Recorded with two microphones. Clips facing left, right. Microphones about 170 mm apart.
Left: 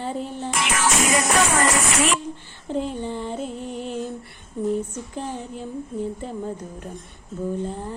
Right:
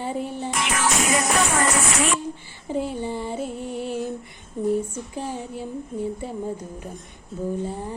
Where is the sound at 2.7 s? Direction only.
10° right (ahead or behind).